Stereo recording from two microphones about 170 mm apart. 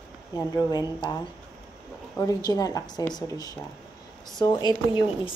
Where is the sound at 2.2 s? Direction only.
20° left (ahead or behind).